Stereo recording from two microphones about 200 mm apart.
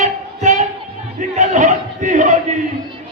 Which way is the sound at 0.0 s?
35° right (ahead or behind).